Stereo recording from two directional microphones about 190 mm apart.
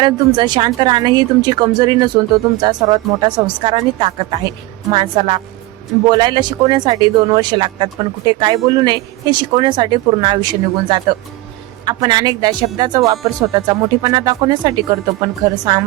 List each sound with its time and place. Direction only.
0.0 s speech: 25° right (ahead or behind)